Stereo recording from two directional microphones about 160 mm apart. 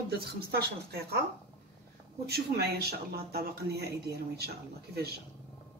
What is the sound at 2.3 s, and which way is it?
Speech, 80° right.